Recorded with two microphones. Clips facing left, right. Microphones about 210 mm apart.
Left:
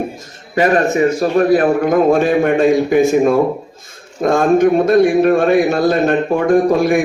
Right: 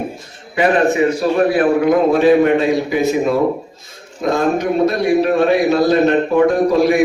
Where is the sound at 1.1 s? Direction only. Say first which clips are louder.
Left 2 dB; 45° left (ahead or behind).